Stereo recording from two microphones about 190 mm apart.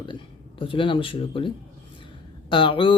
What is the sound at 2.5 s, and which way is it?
Speech, 25° left (ahead or behind).